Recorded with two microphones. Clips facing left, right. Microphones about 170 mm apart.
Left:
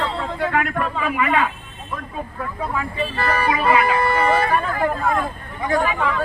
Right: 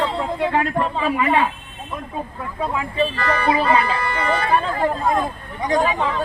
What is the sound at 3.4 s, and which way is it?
Speech, 30° right (ahead or behind).